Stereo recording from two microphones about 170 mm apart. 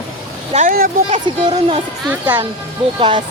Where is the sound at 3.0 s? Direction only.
30° right (ahead or behind).